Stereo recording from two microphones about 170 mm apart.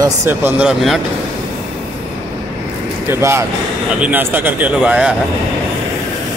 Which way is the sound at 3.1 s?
15° right (ahead or behind).